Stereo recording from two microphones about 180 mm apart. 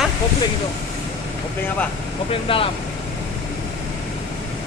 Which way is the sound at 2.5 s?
30° left (ahead or behind).